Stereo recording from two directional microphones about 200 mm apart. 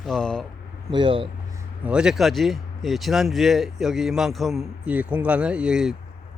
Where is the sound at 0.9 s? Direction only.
25° right (ahead or behind).